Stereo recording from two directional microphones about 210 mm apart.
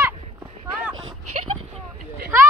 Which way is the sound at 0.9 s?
90° right.